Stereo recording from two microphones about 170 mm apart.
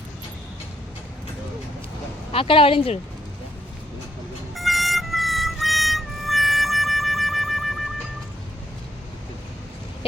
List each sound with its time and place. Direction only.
2.3 s speech: 30° left (ahead or behind)
4.5 s music: centre (ahead or behind)